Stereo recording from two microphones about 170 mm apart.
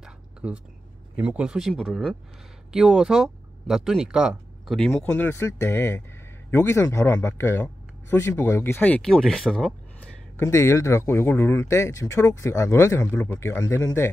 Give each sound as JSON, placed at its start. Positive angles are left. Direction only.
{"t": 0.0, "sound": "a sound", "side_deg": -5}
{"t": 1.1, "sound": "speech", "side_deg": -5}
{"t": 4.9, "sound": "speech", "side_deg": 10}
{"t": 10.3, "sound": "speech", "side_deg": 15}